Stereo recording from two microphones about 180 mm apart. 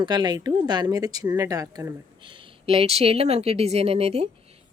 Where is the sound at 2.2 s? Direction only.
30° right (ahead or behind).